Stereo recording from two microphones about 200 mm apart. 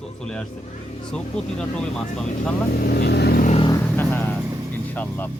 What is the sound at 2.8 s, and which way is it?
Speech, 50° left (ahead or behind).